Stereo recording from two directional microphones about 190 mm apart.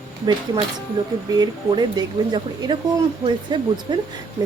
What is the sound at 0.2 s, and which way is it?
A woman's voice, 25° right (ahead or behind).